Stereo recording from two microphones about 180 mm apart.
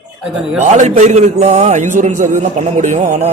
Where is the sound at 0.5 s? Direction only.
40° right (ahead or behind).